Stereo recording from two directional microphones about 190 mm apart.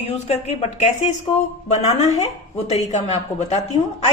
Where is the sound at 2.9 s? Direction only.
35° left (ahead or behind).